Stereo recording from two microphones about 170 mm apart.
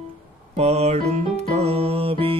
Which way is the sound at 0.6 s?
40° right (ahead or behind).